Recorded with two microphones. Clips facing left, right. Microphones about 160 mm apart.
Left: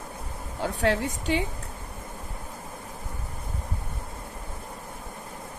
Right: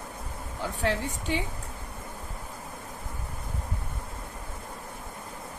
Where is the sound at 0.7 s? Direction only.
75° left (ahead or behind).